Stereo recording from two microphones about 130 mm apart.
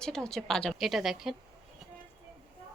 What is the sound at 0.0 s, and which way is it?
A woman's voice, 5° left (ahead or behind).